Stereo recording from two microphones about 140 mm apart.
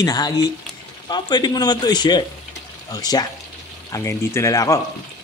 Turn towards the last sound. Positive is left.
turn(degrees=25)  # may be behind; listen again after turning